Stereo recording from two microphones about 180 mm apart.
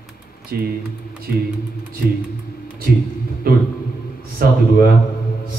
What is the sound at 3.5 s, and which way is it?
Speech, 55° right (ahead or behind).